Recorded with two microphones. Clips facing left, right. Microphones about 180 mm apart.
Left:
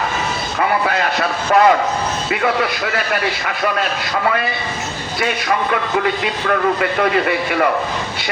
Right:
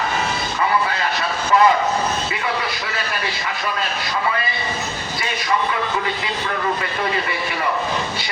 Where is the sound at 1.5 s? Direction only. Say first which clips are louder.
Left 2 dB; 60° left (ahead or behind).